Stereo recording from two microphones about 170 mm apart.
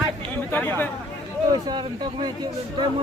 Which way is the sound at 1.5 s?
25° right (ahead or behind).